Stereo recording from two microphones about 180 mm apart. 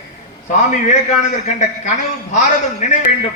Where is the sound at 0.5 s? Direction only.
40° left (ahead or behind).